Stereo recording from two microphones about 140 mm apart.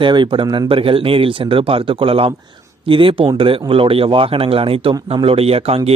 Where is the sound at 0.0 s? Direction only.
35° right (ahead or behind).